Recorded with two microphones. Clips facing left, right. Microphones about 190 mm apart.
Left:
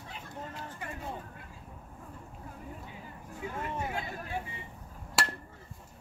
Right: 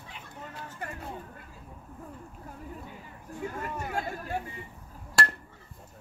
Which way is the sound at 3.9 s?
45° right (ahead or behind).